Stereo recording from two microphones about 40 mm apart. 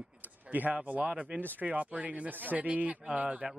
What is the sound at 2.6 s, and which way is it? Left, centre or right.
Speech, right.